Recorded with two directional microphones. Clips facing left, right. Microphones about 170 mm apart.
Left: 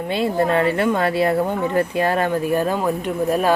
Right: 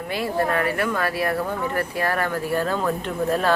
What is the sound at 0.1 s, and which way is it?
Speech, 25° left (ahead or behind).